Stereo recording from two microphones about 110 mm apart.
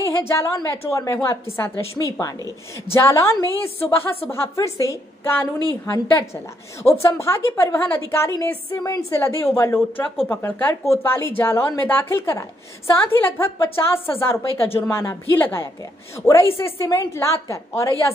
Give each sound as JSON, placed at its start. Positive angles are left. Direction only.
{"t": 0.2, "sound": "a woman's voice", "side_deg": 25}
{"t": 9.2, "sound": "speech", "side_deg": 20}